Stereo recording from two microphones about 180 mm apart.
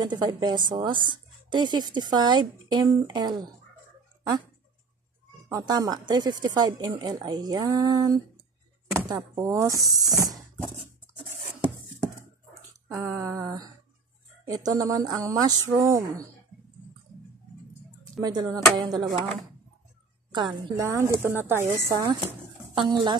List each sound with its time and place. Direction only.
0.0 s speech: 25° right (ahead or behind)
5.5 s speech: 20° right (ahead or behind)
9.8 s speech: centre (ahead or behind)
12.8 s a woman's voice: 10° right (ahead or behind)
14.4 s a sound: 20° right (ahead or behind)
14.8 s speech: 20° right (ahead or behind)
18.2 s speech: 20° right (ahead or behind)
20.3 s a woman's voice: 25° right (ahead or behind)